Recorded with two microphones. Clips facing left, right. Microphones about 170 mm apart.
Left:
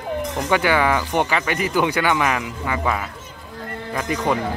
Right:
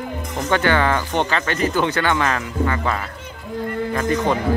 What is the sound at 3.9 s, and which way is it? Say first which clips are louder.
Speech: right 3 dB; 10° left (ahead or behind).